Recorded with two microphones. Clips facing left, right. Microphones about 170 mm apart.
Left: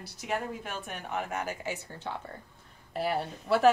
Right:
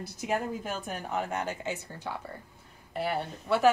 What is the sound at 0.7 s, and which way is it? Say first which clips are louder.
Speech: right 3 dB; 35° right (ahead or behind).